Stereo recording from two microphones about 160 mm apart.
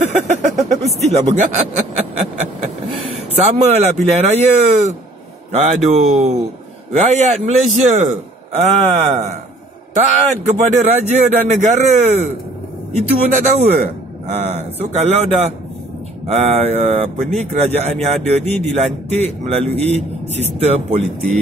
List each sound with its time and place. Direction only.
0.0 s speech: 45° right (ahead or behind)
0.6 s vehicle: centre (ahead or behind)
1.1 s speech: 45° right (ahead or behind)
3.3 s speech: 40° right (ahead or behind)
13.4 s speech: 50° right (ahead or behind)